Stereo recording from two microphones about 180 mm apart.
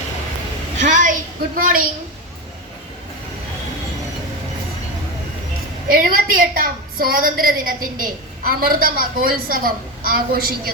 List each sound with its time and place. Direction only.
0.8 s a sound: 45° right (ahead or behind)
1.5 s a woman's voice: 50° right (ahead or behind)
5.9 s a woman's voice: 55° right (ahead or behind)